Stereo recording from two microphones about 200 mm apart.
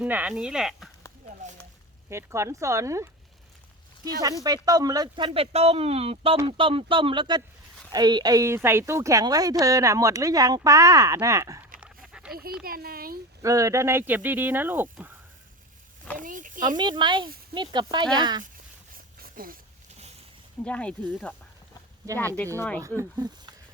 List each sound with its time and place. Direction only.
0.0 s speech: 10° right (ahead or behind)
2.0 s a woman's voice: 15° right (ahead or behind)
4.4 s a woman's voice: 20° right (ahead or behind)
11.8 s dog: 5° right (ahead or behind)
12.6 s a child's voice: 50° right (ahead or behind)
13.4 s a woman's voice: 15° right (ahead or behind)
16.1 s speech: 40° right (ahead or behind)
16.6 s speech: 20° right (ahead or behind)
18.9 s a sound: 45° right (ahead or behind)
20.7 s speech: 5° left (ahead or behind)
22.0 s a woman's voice: 15° right (ahead or behind)